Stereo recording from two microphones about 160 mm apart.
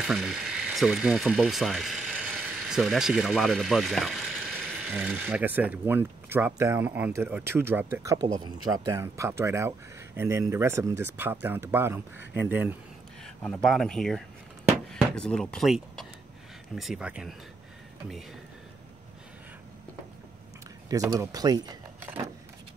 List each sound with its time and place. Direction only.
0.0 s speech: centre (ahead or behind)
4.8 s speech: 10° right (ahead or behind)
13.2 s speech: 5° left (ahead or behind)
20.9 s speech: 20° right (ahead or behind)